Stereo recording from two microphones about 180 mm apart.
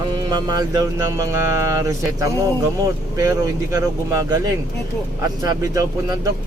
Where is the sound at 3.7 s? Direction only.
20° right (ahead or behind).